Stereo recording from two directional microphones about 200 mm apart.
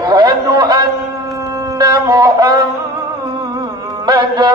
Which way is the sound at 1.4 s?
15° right (ahead or behind).